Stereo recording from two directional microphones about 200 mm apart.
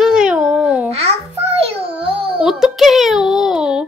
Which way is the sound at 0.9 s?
30° right (ahead or behind).